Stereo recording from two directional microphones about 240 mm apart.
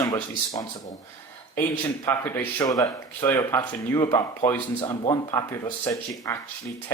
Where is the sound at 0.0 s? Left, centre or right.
Centre.